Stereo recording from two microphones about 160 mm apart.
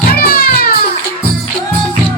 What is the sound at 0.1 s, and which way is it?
Music, 70° left (ahead or behind).